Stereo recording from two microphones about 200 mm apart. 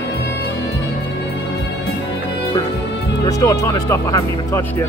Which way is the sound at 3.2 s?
15° left (ahead or behind).